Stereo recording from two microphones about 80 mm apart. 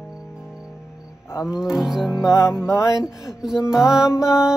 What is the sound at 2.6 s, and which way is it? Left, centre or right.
Mantra, left.